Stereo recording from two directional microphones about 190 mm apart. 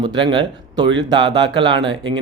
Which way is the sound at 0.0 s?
25° right (ahead or behind).